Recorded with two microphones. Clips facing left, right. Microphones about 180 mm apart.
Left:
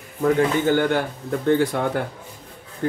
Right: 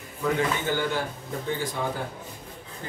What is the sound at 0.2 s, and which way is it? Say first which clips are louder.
Speech: left 7 dB; 55° left (ahead or behind).